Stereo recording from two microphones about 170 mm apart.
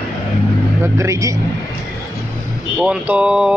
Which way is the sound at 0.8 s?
15° right (ahead or behind).